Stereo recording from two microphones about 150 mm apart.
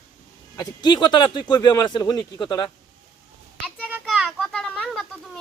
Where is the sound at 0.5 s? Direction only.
30° left (ahead or behind).